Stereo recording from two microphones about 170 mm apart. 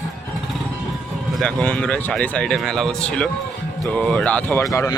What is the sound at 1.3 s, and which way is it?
Speech, 5° left (ahead or behind).